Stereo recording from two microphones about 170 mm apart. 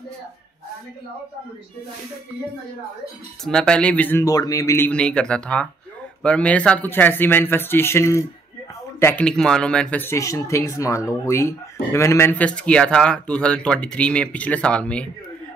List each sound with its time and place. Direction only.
3.4 s speech: 5° left (ahead or behind)